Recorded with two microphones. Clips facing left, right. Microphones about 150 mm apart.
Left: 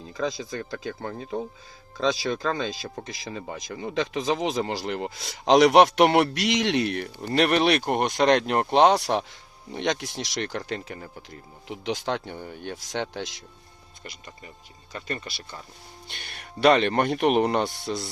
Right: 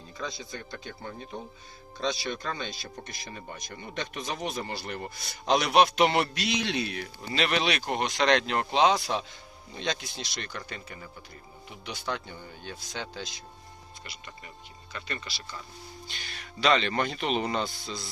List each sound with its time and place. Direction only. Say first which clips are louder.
0.2 s speech: left 9 dB; 90° left
14.9 s speech: left 5 dB; 40° left (ahead or behind)
16.6 s speech: left 6 dB; 55° left (ahead or behind)